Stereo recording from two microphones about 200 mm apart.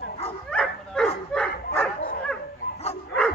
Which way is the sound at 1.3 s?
5° left (ahead or behind).